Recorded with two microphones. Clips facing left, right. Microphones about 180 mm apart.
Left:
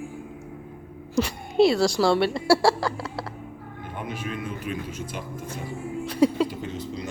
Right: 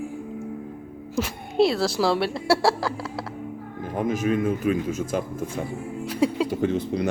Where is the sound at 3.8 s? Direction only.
40° right (ahead or behind).